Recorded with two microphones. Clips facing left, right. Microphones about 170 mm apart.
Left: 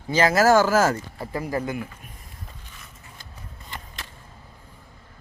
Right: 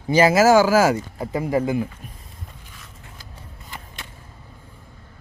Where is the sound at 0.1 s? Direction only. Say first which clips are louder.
Right 3 dB; 10° right (ahead or behind).